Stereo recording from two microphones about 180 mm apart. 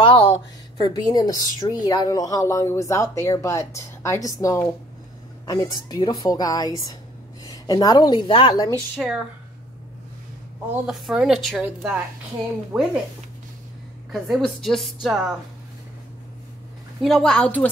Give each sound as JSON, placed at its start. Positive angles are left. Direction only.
{"t": 0.0, "sound": "a woman's voice", "side_deg": 30}
{"t": 8.9, "sound": "a woman's voice", "side_deg": -5}
{"t": 10.7, "sound": "a woman's voice", "side_deg": -5}
{"t": 14.1, "sound": "a woman's voice", "side_deg": 0}
{"t": 17.0, "sound": "a woman's voice", "side_deg": 0}